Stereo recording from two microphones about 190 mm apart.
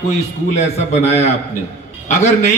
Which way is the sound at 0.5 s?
35° left (ahead or behind).